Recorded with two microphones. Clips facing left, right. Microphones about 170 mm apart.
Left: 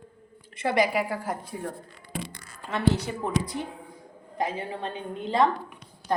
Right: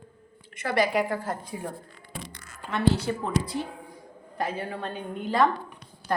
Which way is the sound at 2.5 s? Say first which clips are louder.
Right 1 dB; 25° left (ahead or behind).